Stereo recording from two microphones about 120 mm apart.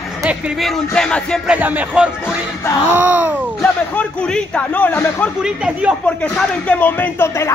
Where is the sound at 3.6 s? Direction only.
10° left (ahead or behind).